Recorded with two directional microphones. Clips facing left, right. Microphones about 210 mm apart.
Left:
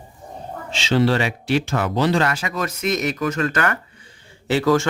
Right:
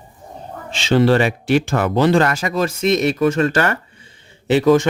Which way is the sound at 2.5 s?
30° right (ahead or behind).